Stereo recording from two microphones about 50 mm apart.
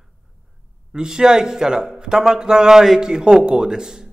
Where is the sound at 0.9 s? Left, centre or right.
Centre.